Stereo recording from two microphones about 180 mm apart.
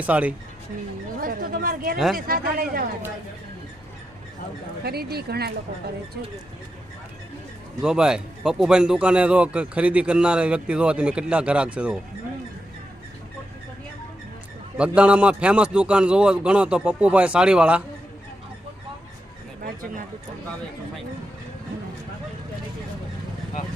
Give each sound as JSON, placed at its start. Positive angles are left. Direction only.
{"t": 0.0, "sound": "a man's voice", "side_deg": -10}
{"t": 1.2, "sound": "a sound", "side_deg": -55}
{"t": 2.1, "sound": "speech", "side_deg": -55}
{"t": 4.8, "sound": "speech", "side_deg": -60}
{"t": 7.8, "sound": "speech", "side_deg": -5}
{"t": 14.8, "sound": "a man's voice", "side_deg": -5}
{"t": 19.6, "sound": "a sound", "side_deg": -50}